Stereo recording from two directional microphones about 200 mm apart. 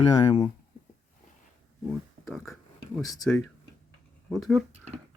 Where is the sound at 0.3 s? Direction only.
25° left (ahead or behind).